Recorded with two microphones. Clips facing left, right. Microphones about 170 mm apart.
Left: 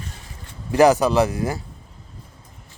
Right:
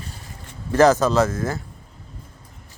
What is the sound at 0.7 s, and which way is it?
Speech, 15° left (ahead or behind).